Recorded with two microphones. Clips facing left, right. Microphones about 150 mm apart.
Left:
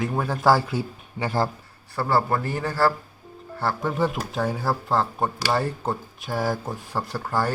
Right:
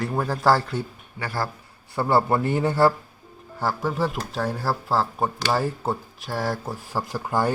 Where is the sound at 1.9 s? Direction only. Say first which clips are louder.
Right 2 dB; 20° right (ahead or behind).